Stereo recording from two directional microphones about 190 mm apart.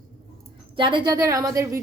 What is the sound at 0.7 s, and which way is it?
A woman's voice, 25° right (ahead or behind).